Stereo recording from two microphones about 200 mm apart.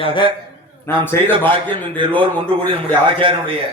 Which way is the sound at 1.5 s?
25° right (ahead or behind).